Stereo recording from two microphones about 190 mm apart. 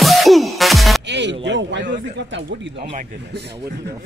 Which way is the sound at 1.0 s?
65° right (ahead or behind).